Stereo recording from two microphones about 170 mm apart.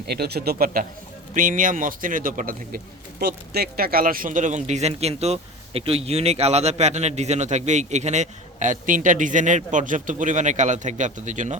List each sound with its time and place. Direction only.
0.1 s a man's voice: 70° right (ahead or behind); by 11.5 s 45° right (ahead or behind)